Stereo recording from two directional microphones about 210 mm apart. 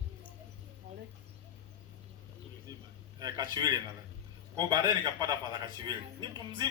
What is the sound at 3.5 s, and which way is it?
A man's voice, 20° right (ahead or behind).